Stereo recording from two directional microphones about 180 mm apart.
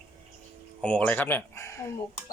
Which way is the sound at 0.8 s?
5° left (ahead or behind).